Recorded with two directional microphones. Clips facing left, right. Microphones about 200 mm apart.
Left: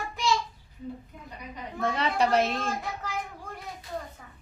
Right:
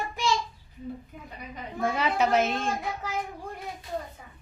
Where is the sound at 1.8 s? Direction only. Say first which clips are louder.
Right 1 dB; 10° right (ahead or behind).